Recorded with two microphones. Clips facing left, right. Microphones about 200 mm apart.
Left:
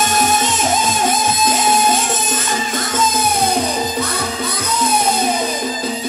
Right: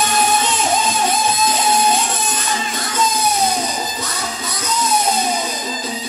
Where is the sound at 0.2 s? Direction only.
45° left (ahead or behind).